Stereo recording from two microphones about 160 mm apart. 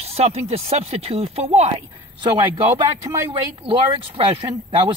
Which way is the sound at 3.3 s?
35° right (ahead or behind).